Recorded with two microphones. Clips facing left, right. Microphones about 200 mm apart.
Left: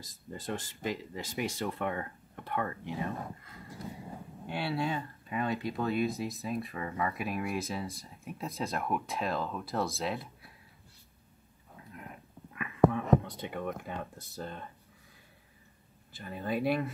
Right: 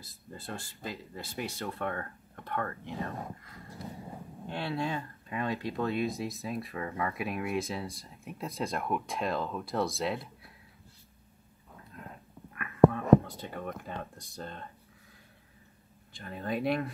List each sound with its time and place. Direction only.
0.0 s speech: 15° left (ahead or behind)
4.5 s speech: 10° left (ahead or behind)
12.5 s a sound: 15° left (ahead or behind)
13.8 s speech: 10° left (ahead or behind)
16.1 s speech: 5° left (ahead or behind)